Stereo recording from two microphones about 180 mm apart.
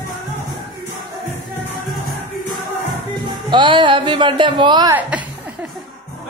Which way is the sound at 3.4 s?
25° right (ahead or behind).